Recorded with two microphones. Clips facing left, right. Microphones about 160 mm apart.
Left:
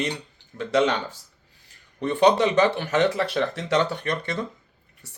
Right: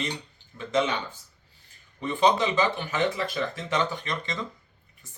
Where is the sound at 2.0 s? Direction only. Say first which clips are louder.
Left 4 dB; 65° left (ahead or behind).